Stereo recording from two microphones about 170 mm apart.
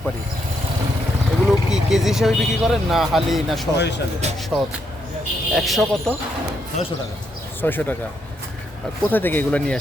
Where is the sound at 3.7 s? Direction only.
90° left.